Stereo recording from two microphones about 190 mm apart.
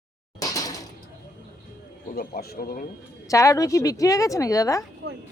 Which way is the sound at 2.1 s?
55° left (ahead or behind).